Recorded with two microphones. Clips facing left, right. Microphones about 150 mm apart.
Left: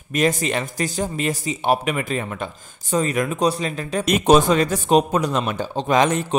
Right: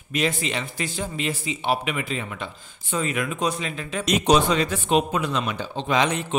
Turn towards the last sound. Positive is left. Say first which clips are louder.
# left 5 dB
turn(degrees=45)  # may be behind; listen again after turning